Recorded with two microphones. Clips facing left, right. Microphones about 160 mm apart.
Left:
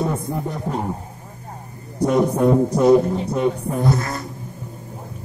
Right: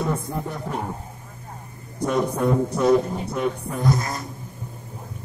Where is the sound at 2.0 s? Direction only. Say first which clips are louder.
Left 5 dB; 30° left (ahead or behind).